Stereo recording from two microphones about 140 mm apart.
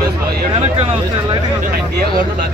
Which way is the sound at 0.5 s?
40° right (ahead or behind).